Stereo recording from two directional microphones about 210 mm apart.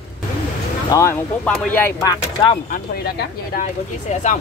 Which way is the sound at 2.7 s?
45° left (ahead or behind).